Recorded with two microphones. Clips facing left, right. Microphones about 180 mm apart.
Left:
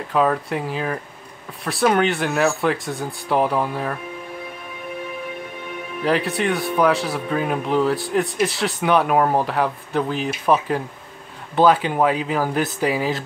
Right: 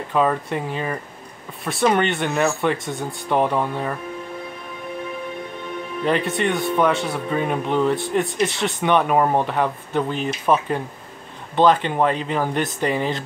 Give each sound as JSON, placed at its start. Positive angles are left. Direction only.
{"t": 0.1, "sound": "speech", "side_deg": 0}
{"t": 6.0, "sound": "speech", "side_deg": 0}